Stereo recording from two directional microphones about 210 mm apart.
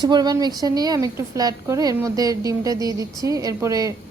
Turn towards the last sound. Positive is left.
turn(degrees=-15)  # may be behind; listen again after turning